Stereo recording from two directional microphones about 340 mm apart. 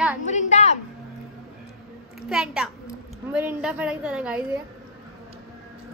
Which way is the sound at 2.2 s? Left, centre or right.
Centre.